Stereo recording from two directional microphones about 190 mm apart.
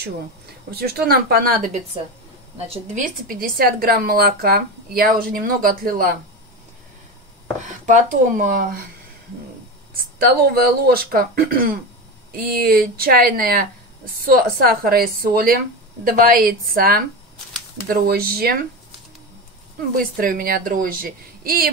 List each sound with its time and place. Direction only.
0.7 s speech: 55° right (ahead or behind)
2.5 s a woman's voice: 35° right (ahead or behind)
7.6 s a woman's voice: 40° right (ahead or behind)
10.1 s a woman's voice: 50° right (ahead or behind)
20.0 s a woman's voice: 45° right (ahead or behind)